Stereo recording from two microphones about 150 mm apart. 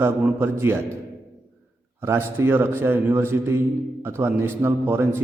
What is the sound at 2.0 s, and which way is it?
A man's voice, 15° right (ahead or behind).